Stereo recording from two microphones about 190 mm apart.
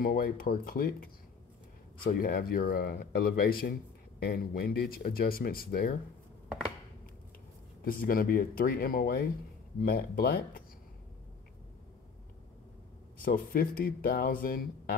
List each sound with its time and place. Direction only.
0.0 s speech: 50° left (ahead or behind)
7.8 s speech: 50° left (ahead or behind)
13.2 s speech: 50° left (ahead or behind)